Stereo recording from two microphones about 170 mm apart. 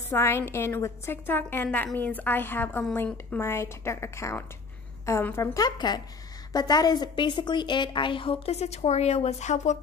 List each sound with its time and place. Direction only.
0.1 s a woman's voice: 15° left (ahead or behind); by 9.8 s 45° left (ahead or behind)